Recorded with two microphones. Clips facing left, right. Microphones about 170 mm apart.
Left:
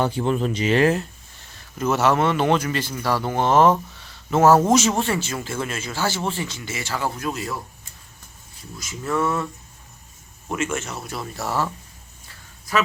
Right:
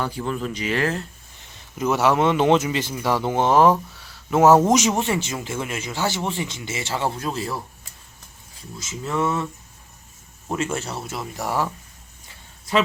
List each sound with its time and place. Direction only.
0.0 s speech: 25° left (ahead or behind)
1.8 s speech: 10° right (ahead or behind)
4.4 s speech: 20° right (ahead or behind)
8.8 s speech: 20° right (ahead or behind)
10.5 s speech: 35° right (ahead or behind); by 11.7 s 15° right (ahead or behind)
12.7 s a man's voice: 25° right (ahead or behind)